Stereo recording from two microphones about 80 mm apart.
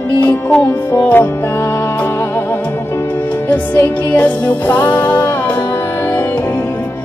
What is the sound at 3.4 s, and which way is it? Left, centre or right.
Music, left.